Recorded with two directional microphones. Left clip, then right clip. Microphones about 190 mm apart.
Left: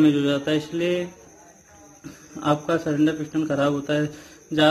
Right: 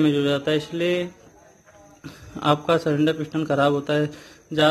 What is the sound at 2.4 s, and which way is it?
A man's voice, 30° right (ahead or behind).